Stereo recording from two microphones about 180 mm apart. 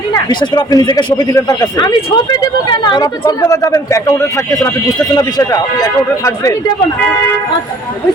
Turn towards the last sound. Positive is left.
turn(degrees=20)  # may be behind; listen again after turning